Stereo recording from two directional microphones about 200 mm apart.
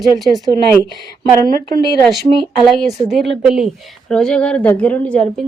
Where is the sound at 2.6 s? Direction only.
Centre (ahead or behind).